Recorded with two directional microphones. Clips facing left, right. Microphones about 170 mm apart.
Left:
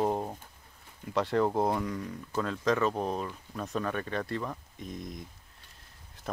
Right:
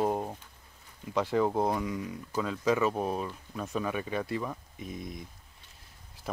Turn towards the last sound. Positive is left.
turn(degrees=0)  # may be behind; listen again after turning